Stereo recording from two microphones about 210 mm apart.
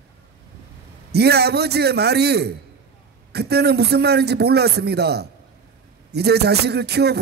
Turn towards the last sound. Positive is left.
turn(degrees=-50)  # may be behind; listen again after turning